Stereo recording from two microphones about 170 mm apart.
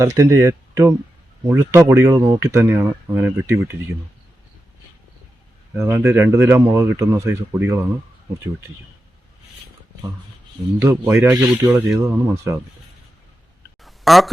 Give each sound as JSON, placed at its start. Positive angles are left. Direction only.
{"t": 0.0, "sound": "speech", "side_deg": -20}
{"t": 5.7, "sound": "speech", "side_deg": -15}
{"t": 10.8, "sound": "speech", "side_deg": -15}
{"t": 13.8, "sound": "a sound", "side_deg": 0}